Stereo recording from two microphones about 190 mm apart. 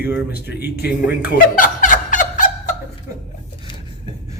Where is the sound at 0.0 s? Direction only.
10° right (ahead or behind).